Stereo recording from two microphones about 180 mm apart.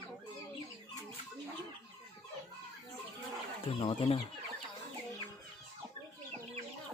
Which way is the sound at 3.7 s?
30° left (ahead or behind).